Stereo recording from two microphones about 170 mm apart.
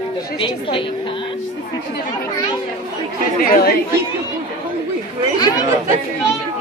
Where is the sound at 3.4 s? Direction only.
60° left (ahead or behind).